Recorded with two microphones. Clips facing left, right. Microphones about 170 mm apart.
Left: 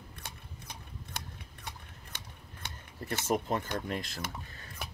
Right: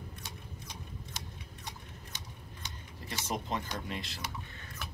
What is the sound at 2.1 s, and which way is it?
Cutlery, 55° left (ahead or behind).